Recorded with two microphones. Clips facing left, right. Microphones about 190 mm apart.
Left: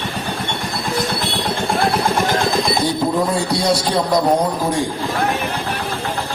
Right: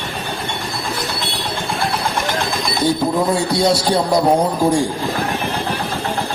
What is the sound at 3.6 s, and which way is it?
Speech, 25° right (ahead or behind).